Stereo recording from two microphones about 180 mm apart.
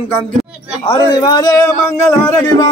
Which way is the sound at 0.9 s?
20° left (ahead or behind).